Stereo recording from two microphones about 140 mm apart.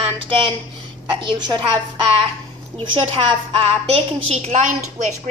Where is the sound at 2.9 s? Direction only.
40° right (ahead or behind).